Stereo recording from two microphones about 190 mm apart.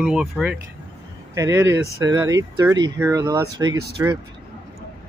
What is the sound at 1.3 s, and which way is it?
Speech, 15° right (ahead or behind).